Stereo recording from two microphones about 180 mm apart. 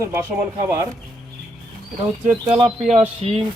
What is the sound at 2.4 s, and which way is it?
Speech, 30° right (ahead or behind).